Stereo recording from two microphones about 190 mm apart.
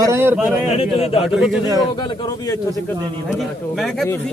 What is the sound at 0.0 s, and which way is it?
Speech, 15° right (ahead or behind).